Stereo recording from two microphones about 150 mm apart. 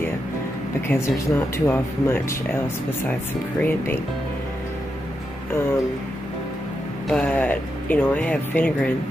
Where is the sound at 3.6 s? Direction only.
15° left (ahead or behind).